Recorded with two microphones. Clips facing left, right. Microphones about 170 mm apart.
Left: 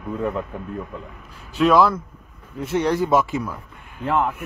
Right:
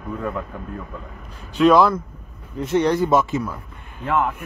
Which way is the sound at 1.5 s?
5° left (ahead or behind).